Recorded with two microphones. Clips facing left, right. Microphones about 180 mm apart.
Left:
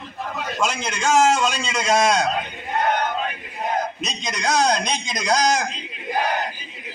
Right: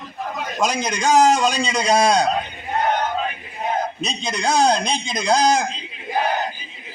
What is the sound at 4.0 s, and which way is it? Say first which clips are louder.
A man's voice: right 3 dB; 30° right (ahead or behind).